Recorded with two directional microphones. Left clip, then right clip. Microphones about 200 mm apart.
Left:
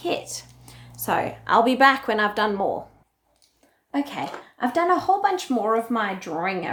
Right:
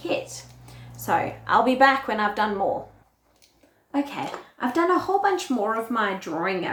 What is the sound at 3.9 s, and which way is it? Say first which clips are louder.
Speech: even; 40° left (ahead or behind).